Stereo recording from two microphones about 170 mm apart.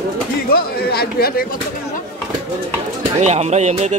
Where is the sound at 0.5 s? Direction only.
65° left (ahead or behind).